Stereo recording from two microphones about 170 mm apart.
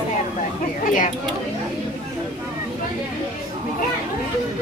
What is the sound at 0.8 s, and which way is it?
Speech, 50° left (ahead or behind).